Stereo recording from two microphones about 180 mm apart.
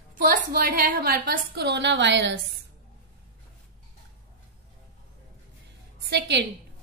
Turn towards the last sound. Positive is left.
turn(degrees=-70)  # may be behind; listen again after turning